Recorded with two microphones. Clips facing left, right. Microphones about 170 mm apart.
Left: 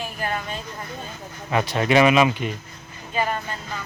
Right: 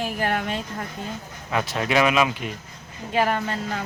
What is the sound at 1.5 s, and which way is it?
Speech, centre (ahead or behind).